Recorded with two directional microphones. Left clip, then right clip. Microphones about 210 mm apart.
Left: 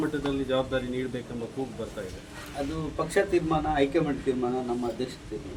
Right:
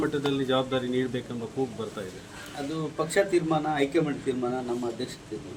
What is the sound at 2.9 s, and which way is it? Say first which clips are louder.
Speech: right 1 dB; centre (ahead or behind).